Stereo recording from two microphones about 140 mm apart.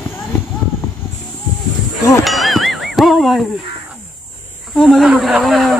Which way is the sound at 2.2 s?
Centre (ahead or behind).